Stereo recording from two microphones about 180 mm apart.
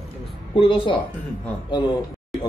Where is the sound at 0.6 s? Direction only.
30° left (ahead or behind).